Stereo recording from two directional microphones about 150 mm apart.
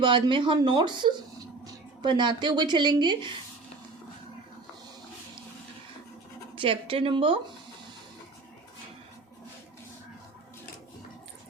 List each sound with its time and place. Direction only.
0.0 s speech: 35° right (ahead or behind)
6.6 s speech: 35° right (ahead or behind)